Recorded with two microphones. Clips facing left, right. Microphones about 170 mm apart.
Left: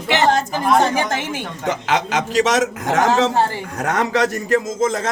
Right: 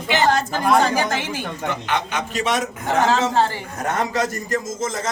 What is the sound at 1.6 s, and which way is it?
A man's voice, 90° left.